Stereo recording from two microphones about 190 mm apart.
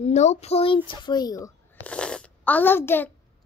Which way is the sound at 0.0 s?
35° left (ahead or behind).